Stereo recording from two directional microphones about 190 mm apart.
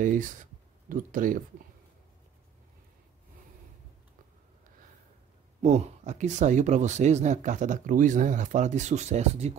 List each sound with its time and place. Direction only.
0.0 s speech: 45° right (ahead or behind)
5.6 s speech: 35° right (ahead or behind)